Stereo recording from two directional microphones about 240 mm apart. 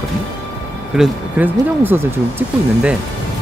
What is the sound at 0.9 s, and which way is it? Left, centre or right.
Speech, centre.